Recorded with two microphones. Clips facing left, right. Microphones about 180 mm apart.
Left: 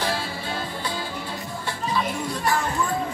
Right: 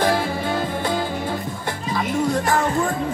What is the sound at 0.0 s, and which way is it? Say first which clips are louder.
Music: right 8 dB; 50° right (ahead or behind).